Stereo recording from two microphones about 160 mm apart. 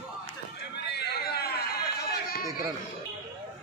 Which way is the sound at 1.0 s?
90° left.